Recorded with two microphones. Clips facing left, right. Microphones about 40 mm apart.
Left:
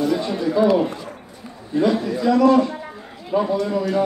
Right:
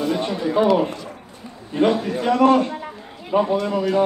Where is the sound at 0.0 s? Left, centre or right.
Right.